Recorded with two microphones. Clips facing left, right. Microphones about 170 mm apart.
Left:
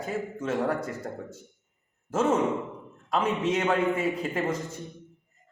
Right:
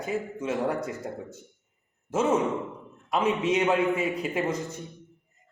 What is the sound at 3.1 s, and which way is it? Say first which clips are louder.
A man's voice: right 1 dB; 10° right (ahead or behind).